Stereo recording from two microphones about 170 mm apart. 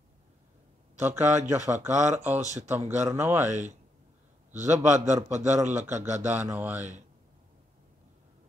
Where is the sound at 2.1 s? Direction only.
45° right (ahead or behind).